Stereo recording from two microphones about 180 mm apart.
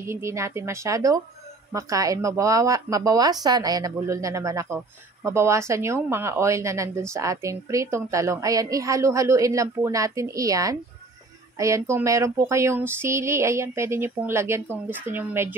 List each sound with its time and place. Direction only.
0.0 s speech: 15° right (ahead or behind)